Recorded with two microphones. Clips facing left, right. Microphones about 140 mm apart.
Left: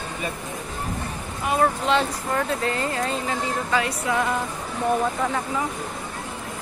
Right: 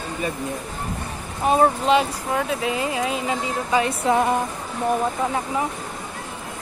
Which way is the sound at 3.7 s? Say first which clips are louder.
Right 6 dB; 25° right (ahead or behind).